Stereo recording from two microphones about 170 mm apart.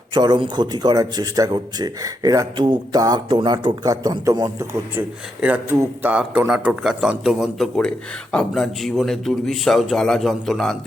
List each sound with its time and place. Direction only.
0.1 s a man's voice: 25° right (ahead or behind)
4.9 s speech: 10° right (ahead or behind)